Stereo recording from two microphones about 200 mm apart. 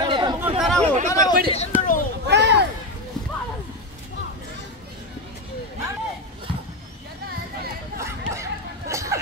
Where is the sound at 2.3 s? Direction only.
60° right (ahead or behind).